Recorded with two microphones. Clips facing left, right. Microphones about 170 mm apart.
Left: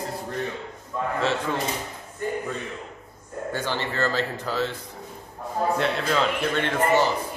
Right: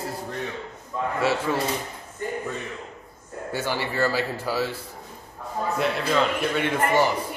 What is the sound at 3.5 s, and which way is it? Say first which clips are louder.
A man's voice: right 2 dB; 10° right (ahead or behind).